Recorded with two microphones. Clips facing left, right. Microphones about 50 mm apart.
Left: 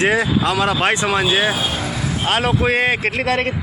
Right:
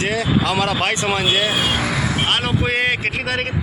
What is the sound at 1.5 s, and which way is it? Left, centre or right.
Vehicle, right.